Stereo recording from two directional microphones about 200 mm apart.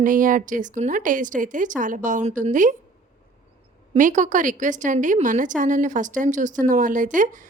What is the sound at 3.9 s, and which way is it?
A woman's voice, 40° right (ahead or behind).